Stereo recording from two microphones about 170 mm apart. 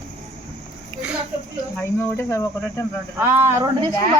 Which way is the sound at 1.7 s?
15° left (ahead or behind).